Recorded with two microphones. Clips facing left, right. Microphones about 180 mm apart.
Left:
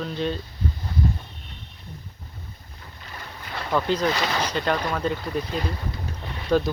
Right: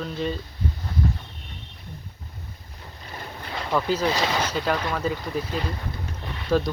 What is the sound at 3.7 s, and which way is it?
Speech, 5° right (ahead or behind).